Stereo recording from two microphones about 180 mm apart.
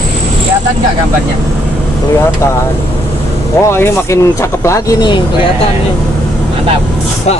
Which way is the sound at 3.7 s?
15° left (ahead or behind).